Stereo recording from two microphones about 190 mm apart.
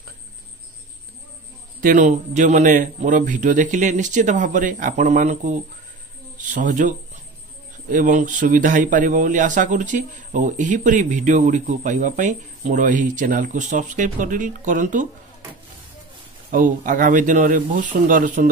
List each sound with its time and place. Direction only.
1.8 s a man's voice: 45° right (ahead or behind)
16.4 s speech: 45° right (ahead or behind)